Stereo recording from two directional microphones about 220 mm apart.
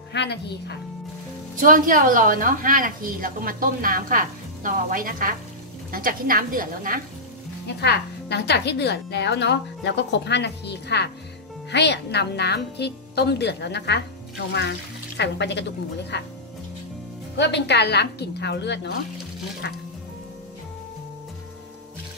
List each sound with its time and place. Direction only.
0.1 s a woman's voice: 50° left (ahead or behind)
1.6 s a woman's voice: 40° right (ahead or behind)
7.6 s a woman's voice: 50° left (ahead or behind)
17.4 s a woman's voice: 50° left (ahead or behind)